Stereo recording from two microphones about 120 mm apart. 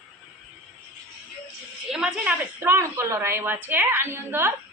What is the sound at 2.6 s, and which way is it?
Speech, 25° right (ahead or behind).